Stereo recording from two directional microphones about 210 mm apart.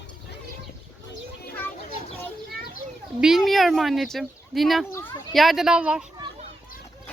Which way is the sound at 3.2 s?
Centre (ahead or behind).